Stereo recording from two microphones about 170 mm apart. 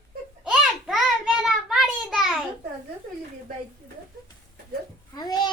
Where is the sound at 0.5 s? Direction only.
Centre (ahead or behind).